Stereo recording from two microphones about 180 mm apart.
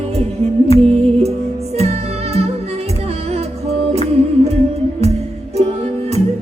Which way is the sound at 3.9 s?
35° right (ahead or behind).